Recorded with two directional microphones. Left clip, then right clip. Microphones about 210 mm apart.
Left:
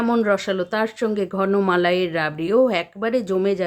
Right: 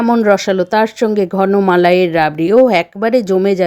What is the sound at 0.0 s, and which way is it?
A woman's voice, 25° right (ahead or behind).